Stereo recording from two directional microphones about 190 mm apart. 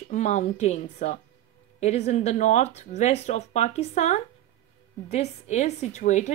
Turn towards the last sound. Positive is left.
turn(degrees=40)  # may be behind; listen again after turning